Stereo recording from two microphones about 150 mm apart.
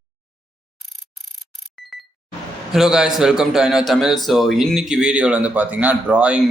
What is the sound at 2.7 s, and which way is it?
Speech, 5° right (ahead or behind).